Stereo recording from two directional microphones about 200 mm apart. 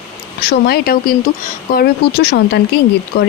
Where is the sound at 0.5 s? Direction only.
50° left (ahead or behind).